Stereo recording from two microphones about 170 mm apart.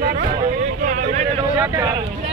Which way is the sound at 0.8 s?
55° right (ahead or behind).